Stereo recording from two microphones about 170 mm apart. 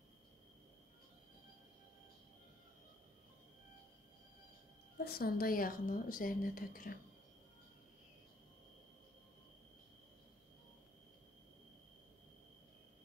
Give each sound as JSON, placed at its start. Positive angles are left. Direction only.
{"t": 4.9, "sound": "a woman's voice", "side_deg": 65}